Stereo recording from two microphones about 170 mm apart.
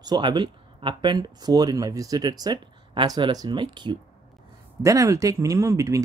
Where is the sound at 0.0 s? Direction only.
25° right (ahead or behind).